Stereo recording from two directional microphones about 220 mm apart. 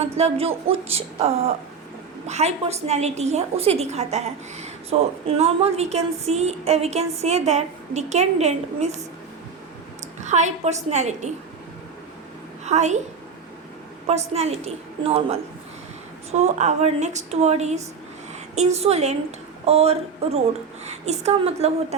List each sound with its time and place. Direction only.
0.0 s a woman's voice: 30° right (ahead or behind)
10.2 s a woman's voice: 30° right (ahead or behind)
12.6 s a woman's voice: 30° right (ahead or behind)
14.1 s a woman's voice: 30° right (ahead or behind)